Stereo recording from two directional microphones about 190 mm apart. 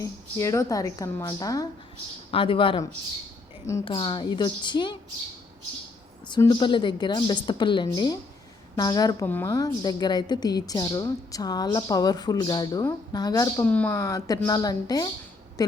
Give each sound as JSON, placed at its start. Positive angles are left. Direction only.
{"t": 0.0, "sound": "a woman's voice", "side_deg": 15}
{"t": 6.2, "sound": "a woman's voice", "side_deg": 25}
{"t": 13.7, "sound": "a woman's voice", "side_deg": 5}
{"t": 13.9, "sound": "a woman's voice", "side_deg": 20}